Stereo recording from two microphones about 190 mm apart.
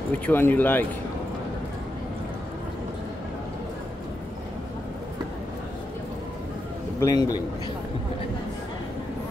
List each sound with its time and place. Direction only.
0.3 s speech: 10° left (ahead or behind)
7.0 s speech: 20° left (ahead or behind)